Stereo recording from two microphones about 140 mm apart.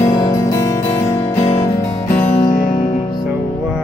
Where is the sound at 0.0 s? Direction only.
25° left (ahead or behind).